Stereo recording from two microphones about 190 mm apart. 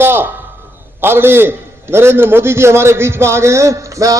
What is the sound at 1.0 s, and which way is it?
A man's voice, 10° right (ahead or behind).